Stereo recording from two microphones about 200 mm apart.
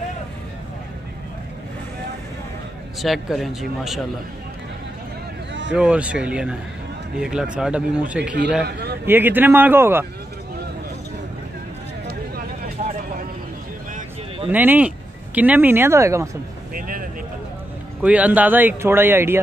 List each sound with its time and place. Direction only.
3.0 s speech: centre (ahead or behind)
5.7 s speech: 5° right (ahead or behind)
8.6 s a man's voice: 55° right (ahead or behind)
9.0 s speech: 10° right (ahead or behind)
12.8 s vehicle: 35° right (ahead or behind)
14.5 s speech: 10° right (ahead or behind)
16.7 s vehicle: 45° right (ahead or behind)
18.0 s speech: 5° right (ahead or behind)